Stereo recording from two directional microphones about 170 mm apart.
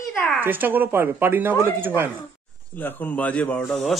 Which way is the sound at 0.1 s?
10° left (ahead or behind).